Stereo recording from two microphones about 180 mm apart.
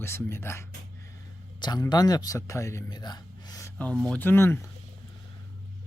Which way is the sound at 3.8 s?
5° left (ahead or behind).